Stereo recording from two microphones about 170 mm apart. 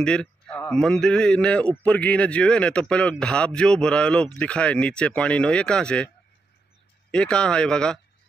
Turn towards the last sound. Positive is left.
turn(degrees=5)  # may be behind; listen again after turning